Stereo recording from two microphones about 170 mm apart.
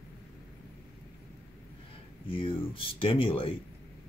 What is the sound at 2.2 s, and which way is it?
Speech, 30° left (ahead or behind).